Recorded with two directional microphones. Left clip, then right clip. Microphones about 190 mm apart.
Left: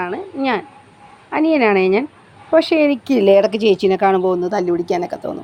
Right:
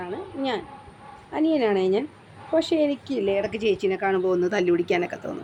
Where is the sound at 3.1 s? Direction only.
45° left (ahead or behind).